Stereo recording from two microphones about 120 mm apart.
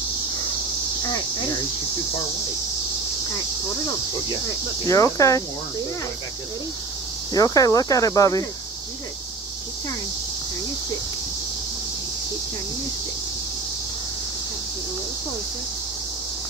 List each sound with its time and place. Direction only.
4.8 s speech: 25° left (ahead or behind)
7.3 s speech: 30° left (ahead or behind)